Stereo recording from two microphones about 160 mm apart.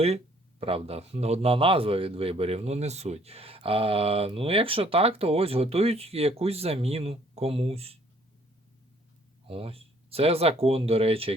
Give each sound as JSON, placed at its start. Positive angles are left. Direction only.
{"t": 0.6, "sound": "speech", "side_deg": -35}
{"t": 9.5, "sound": "speech", "side_deg": -35}